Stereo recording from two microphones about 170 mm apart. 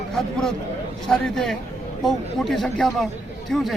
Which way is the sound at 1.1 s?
5° left (ahead or behind).